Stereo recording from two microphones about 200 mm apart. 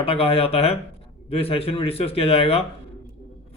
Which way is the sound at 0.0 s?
30° left (ahead or behind).